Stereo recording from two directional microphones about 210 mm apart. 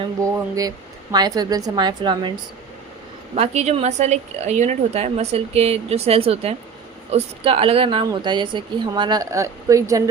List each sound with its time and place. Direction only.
1.1 s a woman's voice: 20° right (ahead or behind)
3.3 s a woman's voice: 30° right (ahead or behind); by 10.0 s 15° right (ahead or behind)